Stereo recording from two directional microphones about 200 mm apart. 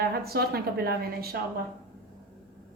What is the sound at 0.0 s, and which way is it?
A woman's voice, 50° right (ahead or behind).